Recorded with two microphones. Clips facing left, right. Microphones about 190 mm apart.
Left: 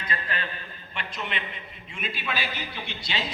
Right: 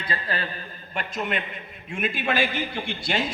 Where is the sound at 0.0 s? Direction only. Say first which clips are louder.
Right 3 dB; 35° right (ahead or behind).